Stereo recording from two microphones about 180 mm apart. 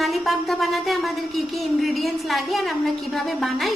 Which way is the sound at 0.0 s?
Centre (ahead or behind).